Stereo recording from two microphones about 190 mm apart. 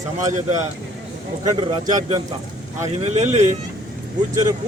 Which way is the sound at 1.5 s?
25° right (ahead or behind).